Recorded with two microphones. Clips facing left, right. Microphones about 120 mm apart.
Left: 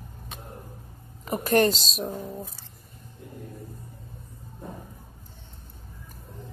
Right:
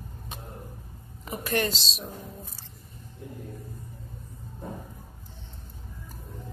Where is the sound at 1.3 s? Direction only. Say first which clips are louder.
Left 7 dB; 45° left (ahead or behind).